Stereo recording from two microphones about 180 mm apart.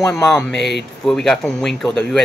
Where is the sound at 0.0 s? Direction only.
5° left (ahead or behind).